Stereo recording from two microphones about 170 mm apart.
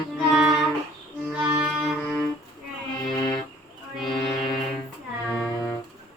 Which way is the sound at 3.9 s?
Centre (ahead or behind).